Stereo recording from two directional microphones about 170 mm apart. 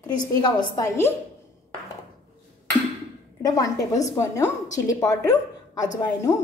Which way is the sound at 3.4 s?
20° left (ahead or behind).